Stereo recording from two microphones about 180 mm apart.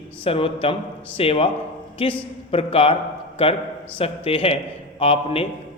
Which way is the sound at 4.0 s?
30° left (ahead or behind).